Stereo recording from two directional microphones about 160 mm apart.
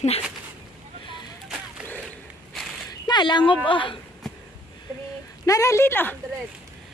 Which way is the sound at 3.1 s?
30° left (ahead or behind).